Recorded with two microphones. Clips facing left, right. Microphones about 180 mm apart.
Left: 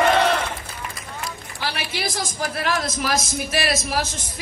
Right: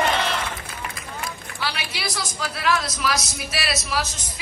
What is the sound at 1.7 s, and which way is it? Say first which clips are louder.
A man's voice: left 3 dB; 50° left (ahead or behind).